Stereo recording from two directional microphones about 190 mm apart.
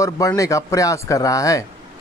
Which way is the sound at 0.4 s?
15° left (ahead or behind).